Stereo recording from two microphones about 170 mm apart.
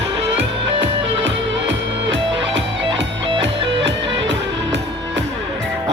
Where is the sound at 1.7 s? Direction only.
90° right.